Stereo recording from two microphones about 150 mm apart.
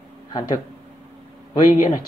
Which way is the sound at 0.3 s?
30° left (ahead or behind).